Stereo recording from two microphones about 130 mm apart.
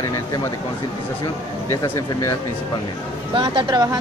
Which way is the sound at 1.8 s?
20° left (ahead or behind).